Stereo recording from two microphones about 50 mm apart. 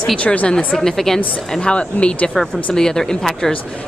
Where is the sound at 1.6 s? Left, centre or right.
Left.